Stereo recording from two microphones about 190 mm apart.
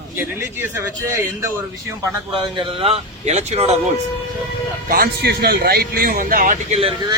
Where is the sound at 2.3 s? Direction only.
25° right (ahead or behind).